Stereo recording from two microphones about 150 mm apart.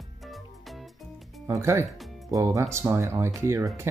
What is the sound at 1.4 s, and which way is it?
Speech, 20° right (ahead or behind).